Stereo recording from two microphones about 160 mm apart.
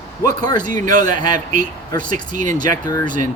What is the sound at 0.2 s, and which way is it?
A man's voice, 25° left (ahead or behind).